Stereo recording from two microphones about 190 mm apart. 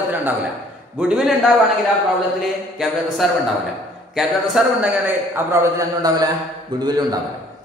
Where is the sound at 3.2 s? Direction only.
Centre (ahead or behind); by 7.2 s 20° right (ahead or behind).